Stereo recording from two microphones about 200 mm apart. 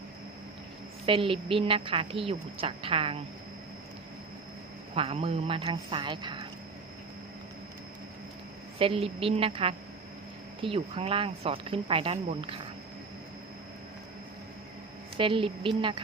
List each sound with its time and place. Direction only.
1.0 s speech: 25° right (ahead or behind)
4.9 s speech: 30° right (ahead or behind)
8.8 s speech: 30° right (ahead or behind)
15.2 s speech: 25° right (ahead or behind)